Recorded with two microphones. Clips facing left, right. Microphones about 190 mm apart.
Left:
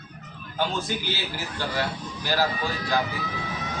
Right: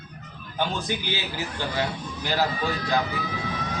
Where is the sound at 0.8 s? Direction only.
15° right (ahead or behind).